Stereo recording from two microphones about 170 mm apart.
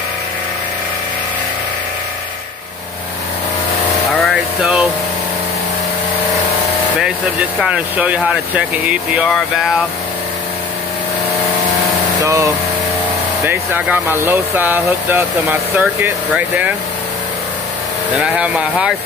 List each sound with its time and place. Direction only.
4.2 s a sound: centre (ahead or behind)
7.0 s speech: 5° right (ahead or behind)
12.2 s speech: 20° right (ahead or behind)
18.1 s speech: 5° right (ahead or behind)